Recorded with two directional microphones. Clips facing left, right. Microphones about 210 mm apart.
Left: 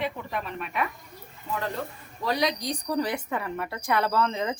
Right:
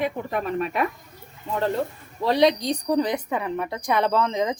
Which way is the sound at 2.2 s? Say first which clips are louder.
Right 7 dB; 25° right (ahead or behind).